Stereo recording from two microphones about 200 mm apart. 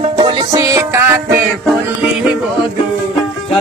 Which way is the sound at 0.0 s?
20° right (ahead or behind).